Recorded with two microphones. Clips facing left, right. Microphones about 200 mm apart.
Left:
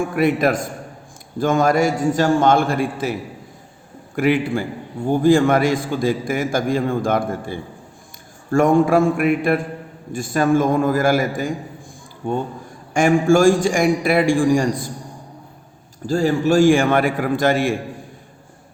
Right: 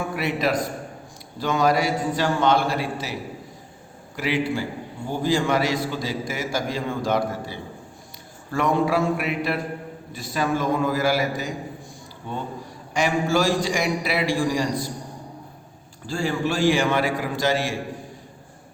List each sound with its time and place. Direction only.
0.2 s a man's voice: 50° left (ahead or behind)
16.0 s a man's voice: 45° left (ahead or behind)